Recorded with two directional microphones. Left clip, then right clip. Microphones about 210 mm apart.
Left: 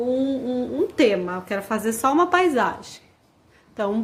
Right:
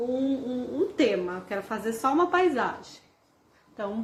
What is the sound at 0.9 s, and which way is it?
A woman's voice, 50° left (ahead or behind).